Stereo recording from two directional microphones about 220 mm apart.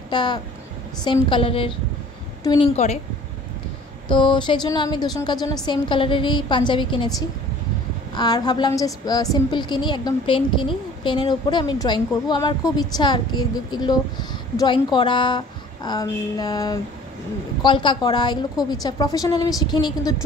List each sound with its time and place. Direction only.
0.1 s a woman's voice: 20° left (ahead or behind)
4.1 s a woman's voice: 20° left (ahead or behind)